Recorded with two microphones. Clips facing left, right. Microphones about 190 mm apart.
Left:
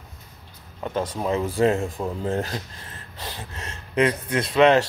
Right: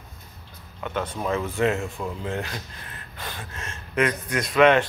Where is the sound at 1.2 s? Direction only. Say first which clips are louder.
Left 3 dB; 30° left (ahead or behind).